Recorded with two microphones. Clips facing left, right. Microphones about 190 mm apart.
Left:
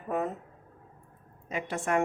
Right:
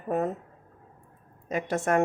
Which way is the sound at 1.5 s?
40° right (ahead or behind).